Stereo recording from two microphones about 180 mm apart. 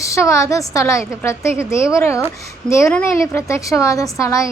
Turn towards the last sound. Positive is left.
turn(degrees=15)  # may be behind; listen again after turning